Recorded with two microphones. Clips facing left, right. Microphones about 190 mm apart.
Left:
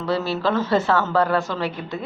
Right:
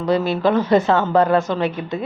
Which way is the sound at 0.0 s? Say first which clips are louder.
Right 5 dB; 15° right (ahead or behind).